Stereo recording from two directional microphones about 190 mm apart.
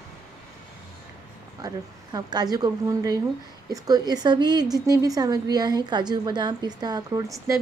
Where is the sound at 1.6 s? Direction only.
20° right (ahead or behind).